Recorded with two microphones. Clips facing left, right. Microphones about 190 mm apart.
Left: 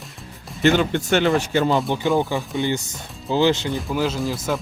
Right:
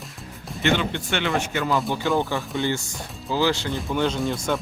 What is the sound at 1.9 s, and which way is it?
Speech, 20° left (ahead or behind).